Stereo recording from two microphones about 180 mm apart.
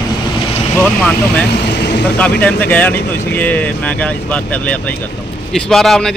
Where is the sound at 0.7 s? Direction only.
10° left (ahead or behind).